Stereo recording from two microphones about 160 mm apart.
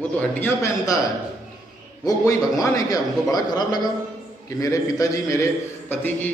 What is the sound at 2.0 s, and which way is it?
A man's voice, 20° left (ahead or behind).